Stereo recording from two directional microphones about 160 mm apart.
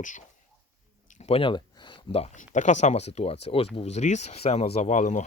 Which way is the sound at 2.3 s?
50° left (ahead or behind).